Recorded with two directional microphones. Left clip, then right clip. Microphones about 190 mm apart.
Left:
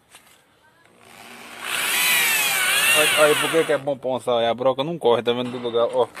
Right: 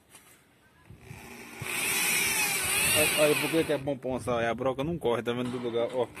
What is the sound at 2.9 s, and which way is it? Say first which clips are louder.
Speech: left 7 dB; 15° left (ahead or behind).